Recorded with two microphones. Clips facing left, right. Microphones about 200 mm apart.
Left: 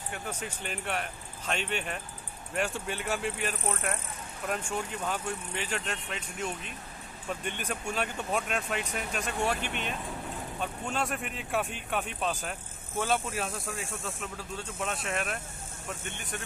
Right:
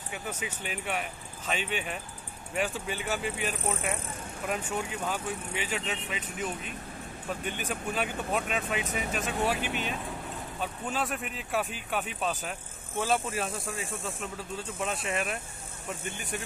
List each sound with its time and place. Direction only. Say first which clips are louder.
0.1 s speech: right 1 dB; 5° right (ahead or behind)